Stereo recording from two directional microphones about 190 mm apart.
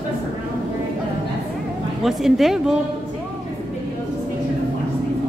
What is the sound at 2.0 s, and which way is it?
Speech, centre (ahead or behind).